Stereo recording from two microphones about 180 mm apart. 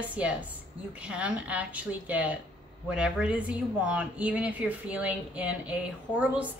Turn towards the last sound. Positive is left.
turn(degrees=-10)  # may be behind; listen again after turning